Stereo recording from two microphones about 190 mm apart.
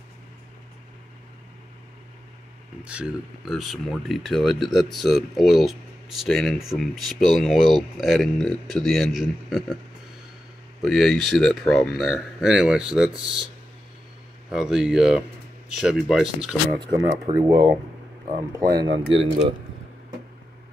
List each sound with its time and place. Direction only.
2.8 s speech: 5° right (ahead or behind)
10.8 s speech: centre (ahead or behind)
14.5 s speech: centre (ahead or behind)
16.8 s speech: 20° right (ahead or behind)
19.0 s speech: 30° right (ahead or behind)